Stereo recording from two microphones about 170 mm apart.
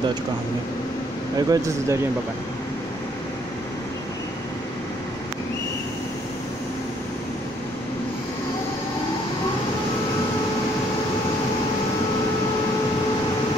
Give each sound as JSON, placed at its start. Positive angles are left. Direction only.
{"t": 1.5, "sound": "speech", "side_deg": -15}